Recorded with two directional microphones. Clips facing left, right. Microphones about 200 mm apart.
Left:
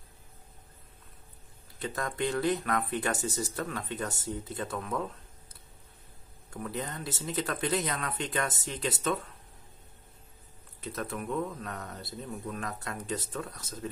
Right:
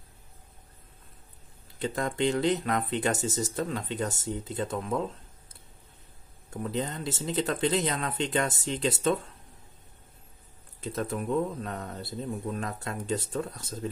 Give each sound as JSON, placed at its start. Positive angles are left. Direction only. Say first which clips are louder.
{"t": 1.8, "sound": "speech", "louder": "right 4 dB", "side_deg": -25}
{"t": 6.5, "sound": "speech", "louder": "right 5 dB", "side_deg": -25}
{"t": 10.8, "sound": "speech", "louder": "right 4 dB", "side_deg": -30}